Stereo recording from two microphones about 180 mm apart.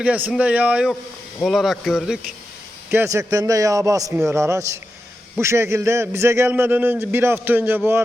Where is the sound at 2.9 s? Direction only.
15° right (ahead or behind).